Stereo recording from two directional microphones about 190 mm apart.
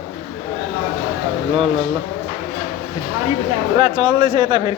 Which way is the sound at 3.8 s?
30° right (ahead or behind).